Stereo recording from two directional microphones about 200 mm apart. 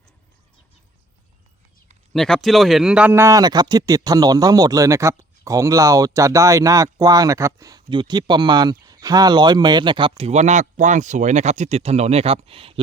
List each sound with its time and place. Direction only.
2.1 s speech: 5° left (ahead or behind); by 12.8 s 30° right (ahead or behind)